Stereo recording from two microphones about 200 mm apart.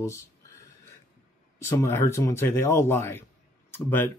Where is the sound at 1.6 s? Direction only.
10° left (ahead or behind).